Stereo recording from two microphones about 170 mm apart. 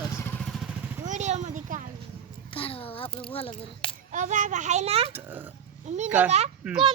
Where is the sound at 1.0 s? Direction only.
45° right (ahead or behind).